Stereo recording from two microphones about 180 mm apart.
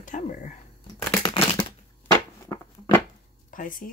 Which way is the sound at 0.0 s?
45° left (ahead or behind).